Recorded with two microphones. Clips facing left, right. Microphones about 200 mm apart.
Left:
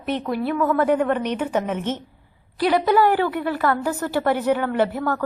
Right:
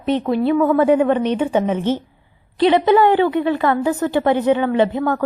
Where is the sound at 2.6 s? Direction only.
20° right (ahead or behind).